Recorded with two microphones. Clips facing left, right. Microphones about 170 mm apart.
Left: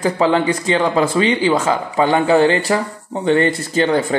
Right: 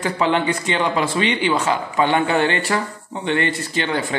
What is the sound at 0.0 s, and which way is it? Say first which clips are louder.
Speech: left 4 dB; 35° left (ahead or behind).